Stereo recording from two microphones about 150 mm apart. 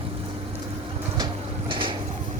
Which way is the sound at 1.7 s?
35° right (ahead or behind).